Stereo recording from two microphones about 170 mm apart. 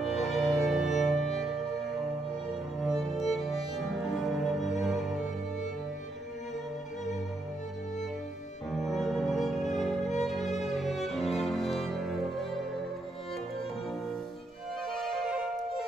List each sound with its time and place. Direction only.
0.0 s music: centre (ahead or behind)
2.8 s music: centre (ahead or behind)
8.7 s music: centre (ahead or behind)
10.0 s music: 45° left (ahead or behind)
10.8 s music: centre (ahead or behind)
14.9 s music: centre (ahead or behind)